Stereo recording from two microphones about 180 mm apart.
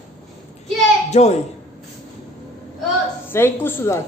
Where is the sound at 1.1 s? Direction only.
40° left (ahead or behind).